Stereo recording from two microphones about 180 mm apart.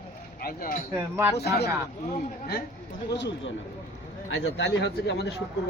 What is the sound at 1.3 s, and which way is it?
Speech, 65° left (ahead or behind).